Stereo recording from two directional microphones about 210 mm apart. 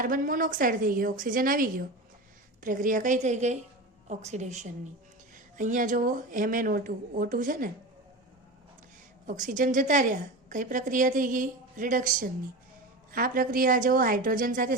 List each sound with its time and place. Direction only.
0.0 s a woman's voice: 40° right (ahead or behind)
9.2 s a woman's voice: 40° right (ahead or behind)